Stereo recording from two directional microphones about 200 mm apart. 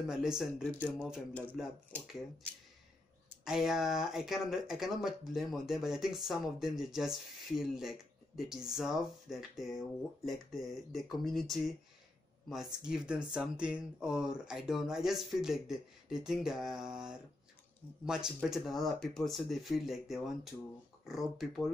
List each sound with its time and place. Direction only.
0.0 s speech: 5° right (ahead or behind)
1.3 s speech: 10° left (ahead or behind)
3.4 s speech: centre (ahead or behind)